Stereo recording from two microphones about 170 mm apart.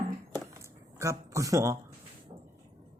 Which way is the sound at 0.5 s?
15° right (ahead or behind).